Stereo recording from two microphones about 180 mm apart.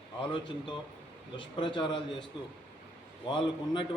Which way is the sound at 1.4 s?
25° left (ahead or behind).